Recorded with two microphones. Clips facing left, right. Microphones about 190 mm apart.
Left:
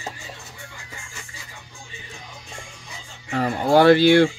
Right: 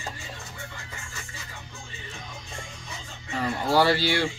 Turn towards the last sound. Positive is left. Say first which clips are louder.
# left 10 dB
turn(degrees=55)  # may be behind; listen again after turning